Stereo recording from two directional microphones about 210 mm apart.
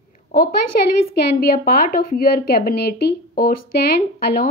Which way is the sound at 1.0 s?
45° left (ahead or behind).